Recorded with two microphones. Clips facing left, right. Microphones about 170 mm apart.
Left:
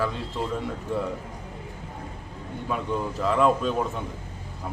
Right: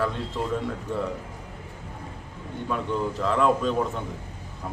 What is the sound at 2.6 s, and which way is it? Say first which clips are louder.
Speech: right 1 dB; 5° left (ahead or behind).